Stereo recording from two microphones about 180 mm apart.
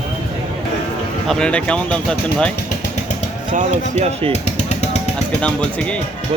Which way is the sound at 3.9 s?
35° right (ahead or behind).